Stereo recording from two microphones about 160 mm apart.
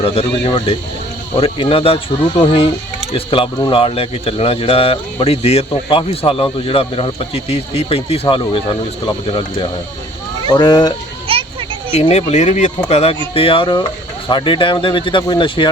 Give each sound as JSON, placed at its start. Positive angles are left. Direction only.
{"t": 0.0, "sound": "speech", "side_deg": 35}
{"t": 11.3, "sound": "a sound", "side_deg": -35}
{"t": 11.9, "sound": "speech", "side_deg": 40}